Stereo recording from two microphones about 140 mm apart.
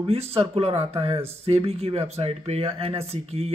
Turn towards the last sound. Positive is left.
turn(degrees=-45)  # may be behind; listen again after turning